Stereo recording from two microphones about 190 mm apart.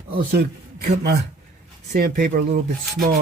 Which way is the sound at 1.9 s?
50° right (ahead or behind).